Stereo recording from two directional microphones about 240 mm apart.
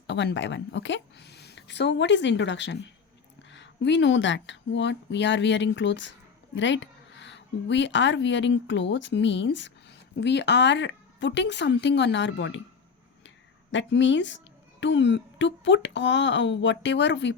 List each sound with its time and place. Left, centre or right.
0.1 s a woman's voice: left